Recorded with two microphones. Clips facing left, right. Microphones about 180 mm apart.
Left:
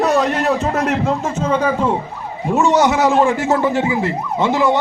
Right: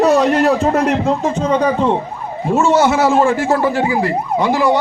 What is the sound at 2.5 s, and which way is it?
Speech, 15° left (ahead or behind).